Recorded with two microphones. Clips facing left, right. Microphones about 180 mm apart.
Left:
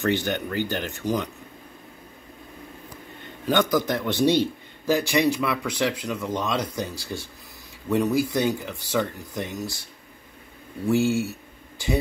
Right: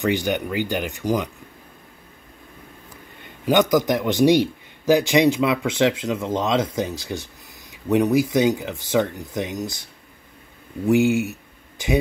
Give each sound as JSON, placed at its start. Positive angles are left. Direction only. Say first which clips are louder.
{"t": 0.0, "sound": "speech", "louder": "right 3 dB", "side_deg": -15}
{"t": 3.4, "sound": "a man's voice", "louder": "right 4 dB", "side_deg": -15}
{"t": 10.9, "sound": "speech", "louder": "right 4 dB", "side_deg": -15}